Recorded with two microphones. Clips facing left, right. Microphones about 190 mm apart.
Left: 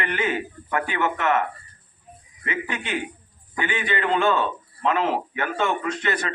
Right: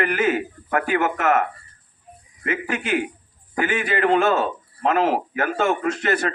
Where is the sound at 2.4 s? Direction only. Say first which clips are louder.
Right 4 dB; 45° right (ahead or behind).